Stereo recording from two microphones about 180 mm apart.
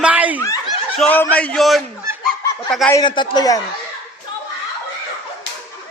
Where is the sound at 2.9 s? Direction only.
25° left (ahead or behind).